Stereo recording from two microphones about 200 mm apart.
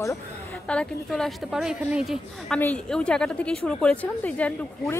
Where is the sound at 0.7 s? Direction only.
5° left (ahead or behind).